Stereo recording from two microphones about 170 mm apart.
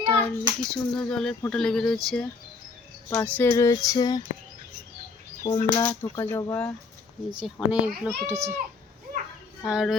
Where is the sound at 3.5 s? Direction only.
20° left (ahead or behind).